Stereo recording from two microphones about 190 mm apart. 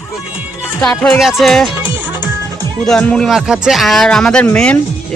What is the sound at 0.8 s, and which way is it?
Speech, 5° left (ahead or behind).